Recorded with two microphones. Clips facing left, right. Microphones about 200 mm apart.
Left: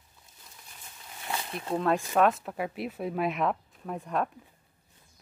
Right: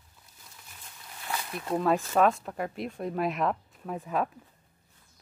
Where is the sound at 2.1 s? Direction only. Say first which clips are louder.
Even; centre (ahead or behind).